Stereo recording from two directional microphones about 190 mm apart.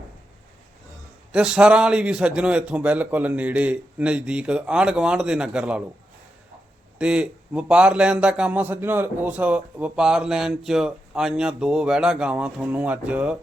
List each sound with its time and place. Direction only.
1.3 s a man's voice: 5° right (ahead or behind)
7.0 s a man's voice: 5° right (ahead or behind)